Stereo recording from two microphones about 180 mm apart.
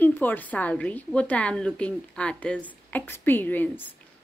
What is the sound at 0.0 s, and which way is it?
A woman's voice, 10° left (ahead or behind).